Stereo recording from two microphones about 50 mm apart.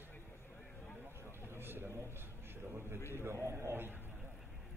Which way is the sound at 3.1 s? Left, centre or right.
Right.